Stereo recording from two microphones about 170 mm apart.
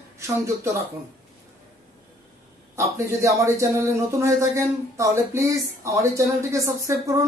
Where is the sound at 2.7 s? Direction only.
15° right (ahead or behind).